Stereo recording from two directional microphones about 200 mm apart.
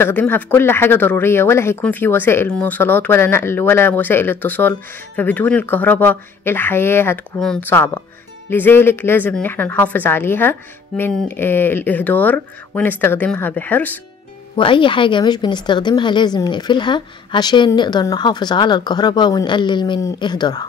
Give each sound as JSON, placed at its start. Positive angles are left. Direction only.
{"t": 0.0, "sound": "speech", "side_deg": 10}
{"t": 14.5, "sound": "speech", "side_deg": 25}